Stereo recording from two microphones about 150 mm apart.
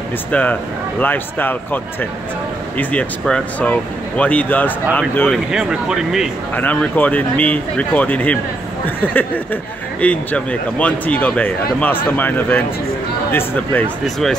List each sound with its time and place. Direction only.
0.3 s speech: 10° left (ahead or behind)
2.8 s speech: 10° left (ahead or behind)
5.5 s speech: 5° right (ahead or behind)
6.5 s speech: 10° left (ahead or behind)